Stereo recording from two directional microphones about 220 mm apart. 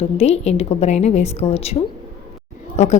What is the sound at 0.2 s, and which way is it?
A woman's voice, 30° left (ahead or behind).